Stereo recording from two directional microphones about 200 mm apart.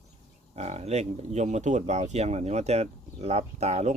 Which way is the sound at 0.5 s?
30° right (ahead or behind).